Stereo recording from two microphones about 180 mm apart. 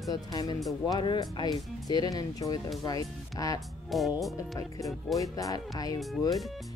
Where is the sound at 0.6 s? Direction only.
Centre (ahead or behind).